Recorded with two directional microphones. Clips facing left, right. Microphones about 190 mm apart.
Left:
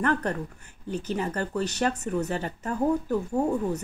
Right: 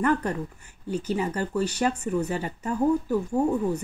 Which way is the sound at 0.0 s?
10° right (ahead or behind).